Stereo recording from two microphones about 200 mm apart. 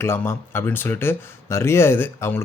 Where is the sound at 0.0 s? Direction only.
10° left (ahead or behind).